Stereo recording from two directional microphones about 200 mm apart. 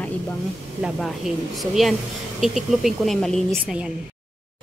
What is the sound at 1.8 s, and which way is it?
Speech, centre (ahead or behind).